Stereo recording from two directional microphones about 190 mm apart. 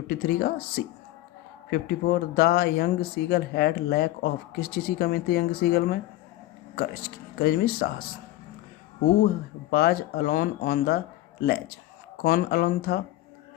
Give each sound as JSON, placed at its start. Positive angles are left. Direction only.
{"t": 0.1, "sound": "speech", "side_deg": 55}
{"t": 1.7, "sound": "speech", "side_deg": 55}
{"t": 9.2, "sound": "speech", "side_deg": 55}